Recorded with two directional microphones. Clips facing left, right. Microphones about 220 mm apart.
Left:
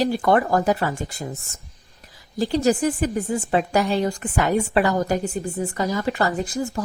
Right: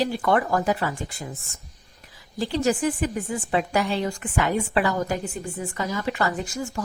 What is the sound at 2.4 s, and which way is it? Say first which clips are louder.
A woman's voice: left 3 dB; 40° left (ahead or behind).